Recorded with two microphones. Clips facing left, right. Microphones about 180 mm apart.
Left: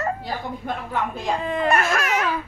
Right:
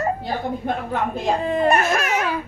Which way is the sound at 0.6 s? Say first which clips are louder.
Right 4 dB; 35° right (ahead or behind).